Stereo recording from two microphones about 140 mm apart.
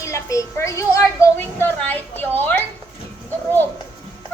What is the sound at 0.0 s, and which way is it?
A woman's voice, 20° left (ahead or behind).